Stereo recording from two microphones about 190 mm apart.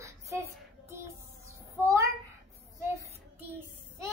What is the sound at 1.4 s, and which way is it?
Child singing, 15° right (ahead or behind).